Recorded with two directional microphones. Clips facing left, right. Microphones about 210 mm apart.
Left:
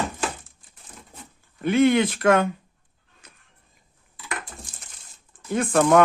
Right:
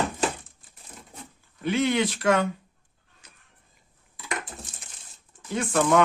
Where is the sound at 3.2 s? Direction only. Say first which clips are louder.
Left 4 dB; 55° left (ahead or behind).